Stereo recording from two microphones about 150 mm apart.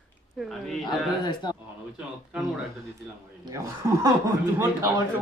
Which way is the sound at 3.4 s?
25° right (ahead or behind).